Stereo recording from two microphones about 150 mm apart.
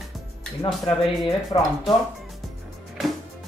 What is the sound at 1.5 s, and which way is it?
Speech, 30° left (ahead or behind).